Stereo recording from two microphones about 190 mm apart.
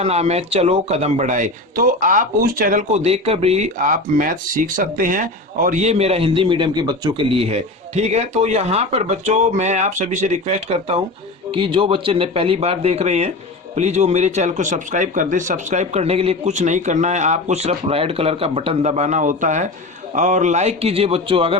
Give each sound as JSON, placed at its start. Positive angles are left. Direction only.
{"t": 0.0, "sound": "speech", "side_deg": -35}
{"t": 3.0, "sound": "speech", "side_deg": -30}